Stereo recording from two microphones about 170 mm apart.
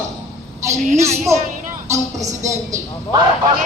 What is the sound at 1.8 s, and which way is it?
A woman's voice, 15° right (ahead or behind).